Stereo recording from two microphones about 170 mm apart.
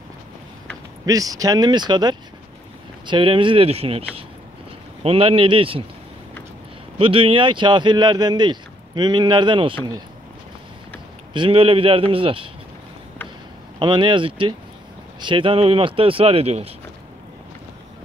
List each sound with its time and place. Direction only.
1.0 s speech: 20° right (ahead or behind); by 4.0 s 35° right (ahead or behind)
5.0 s speech: 35° right (ahead or behind)
7.0 s speech: 30° right (ahead or behind)
11.3 s speech: 30° right (ahead or behind)
13.7 s speech: 25° right (ahead or behind)